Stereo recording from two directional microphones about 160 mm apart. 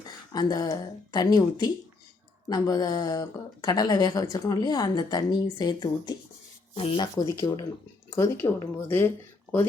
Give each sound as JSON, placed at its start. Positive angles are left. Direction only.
{"t": 0.3, "sound": "speech", "side_deg": 25}
{"t": 6.7, "sound": "speech", "side_deg": 40}
{"t": 7.0, "sound": "speech", "side_deg": 25}